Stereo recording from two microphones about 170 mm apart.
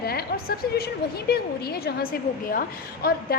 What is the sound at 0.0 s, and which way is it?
A woman's voice, 65° left (ahead or behind).